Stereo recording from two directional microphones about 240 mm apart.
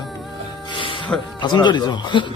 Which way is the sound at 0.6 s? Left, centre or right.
Left.